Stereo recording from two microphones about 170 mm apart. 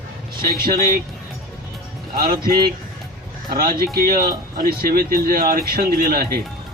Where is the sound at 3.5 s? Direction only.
60° right (ahead or behind).